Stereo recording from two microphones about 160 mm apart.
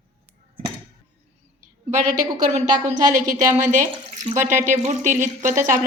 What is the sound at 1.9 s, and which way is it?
A woman's voice, 50° right (ahead or behind).